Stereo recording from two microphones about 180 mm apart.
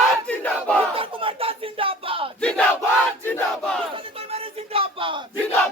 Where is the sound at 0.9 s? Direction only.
30° right (ahead or behind).